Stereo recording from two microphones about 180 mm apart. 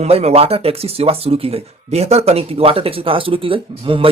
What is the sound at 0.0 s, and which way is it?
Speech, 35° right (ahead or behind).